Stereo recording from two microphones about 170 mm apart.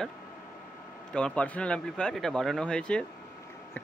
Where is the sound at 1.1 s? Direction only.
5° left (ahead or behind).